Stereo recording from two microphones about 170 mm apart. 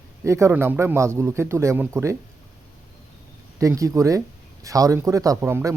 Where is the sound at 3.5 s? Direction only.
20° right (ahead or behind).